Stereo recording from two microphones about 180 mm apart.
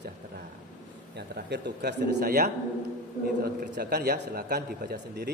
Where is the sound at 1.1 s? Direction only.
70° right (ahead or behind).